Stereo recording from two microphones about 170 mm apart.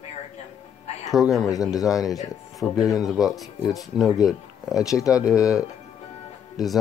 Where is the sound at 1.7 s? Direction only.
20° left (ahead or behind).